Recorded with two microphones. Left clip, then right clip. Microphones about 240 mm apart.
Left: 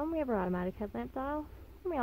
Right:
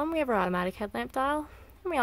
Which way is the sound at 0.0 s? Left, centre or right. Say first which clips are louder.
Right 6 dB; centre.